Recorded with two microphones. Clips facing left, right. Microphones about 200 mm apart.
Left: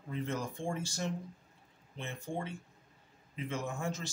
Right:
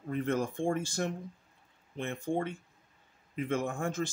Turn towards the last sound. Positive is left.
turn(degrees=-50)  # may be behind; listen again after turning